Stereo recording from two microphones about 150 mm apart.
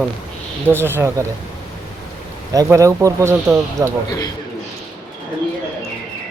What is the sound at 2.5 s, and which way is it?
A man's voice, 20° right (ahead or behind).